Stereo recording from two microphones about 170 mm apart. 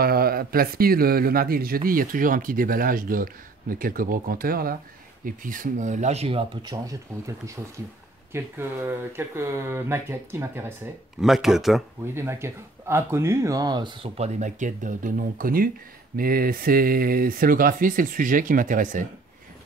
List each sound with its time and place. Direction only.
0.0 s a man's voice: 60° right (ahead or behind); by 10.7 s 15° right (ahead or behind)
11.1 s speech: centre (ahead or behind)
12.1 s a man's voice: 15° right (ahead or behind); by 19.0 s 50° right (ahead or behind)